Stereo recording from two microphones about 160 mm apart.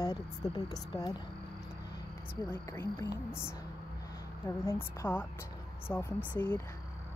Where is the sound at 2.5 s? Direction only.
15° left (ahead or behind).